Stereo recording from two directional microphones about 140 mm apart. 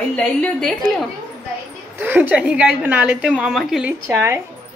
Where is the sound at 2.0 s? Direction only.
15° right (ahead or behind).